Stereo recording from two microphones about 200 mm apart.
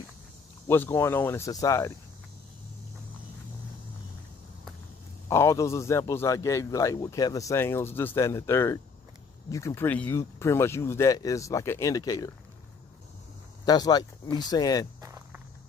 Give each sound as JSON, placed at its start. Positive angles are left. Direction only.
{"t": 0.7, "sound": "a man's voice", "side_deg": 15}
{"t": 5.3, "sound": "a man's voice", "side_deg": 15}
{"t": 13.7, "sound": "speech", "side_deg": 20}
{"t": 15.0, "sound": "walk", "side_deg": -15}